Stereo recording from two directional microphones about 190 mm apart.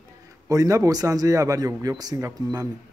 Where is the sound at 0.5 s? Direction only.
15° right (ahead or behind).